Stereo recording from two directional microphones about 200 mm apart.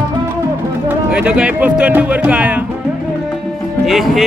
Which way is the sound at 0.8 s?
5° right (ahead or behind).